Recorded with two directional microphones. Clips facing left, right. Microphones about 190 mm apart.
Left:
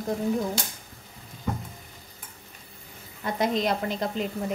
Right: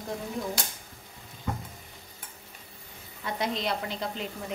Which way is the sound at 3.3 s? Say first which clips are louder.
Left 5 dB; 45° left (ahead or behind).